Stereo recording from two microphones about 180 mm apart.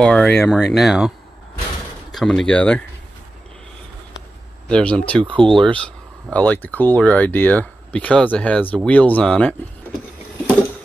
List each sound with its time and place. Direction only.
0.0 s speech: 5° left (ahead or behind)
2.1 s speech: 5° left (ahead or behind)
4.6 s speech: 5° left (ahead or behind)
5.2 s speech: 25° right (ahead or behind)
6.3 s speech: 10° left (ahead or behind)